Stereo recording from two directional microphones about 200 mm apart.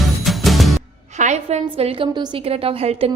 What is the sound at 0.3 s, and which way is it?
Music, centre (ahead or behind).